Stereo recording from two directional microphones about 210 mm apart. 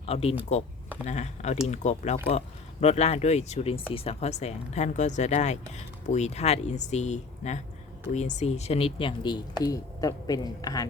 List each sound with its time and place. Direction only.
0.0 s speech: 30° left (ahead or behind)